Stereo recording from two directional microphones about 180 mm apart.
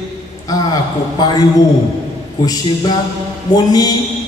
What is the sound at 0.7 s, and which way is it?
Speech, 20° left (ahead or behind).